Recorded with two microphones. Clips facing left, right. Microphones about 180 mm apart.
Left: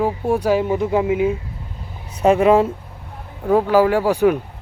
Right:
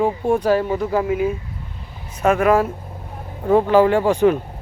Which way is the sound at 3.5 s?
5° left (ahead or behind).